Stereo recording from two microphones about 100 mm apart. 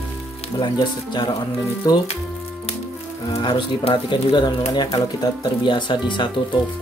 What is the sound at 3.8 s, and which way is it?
Speech, 55° left (ahead or behind).